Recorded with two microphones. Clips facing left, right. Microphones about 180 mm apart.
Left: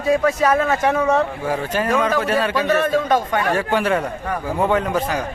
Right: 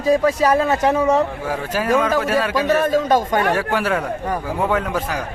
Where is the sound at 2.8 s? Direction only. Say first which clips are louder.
Right 1 dB; 40° right (ahead or behind).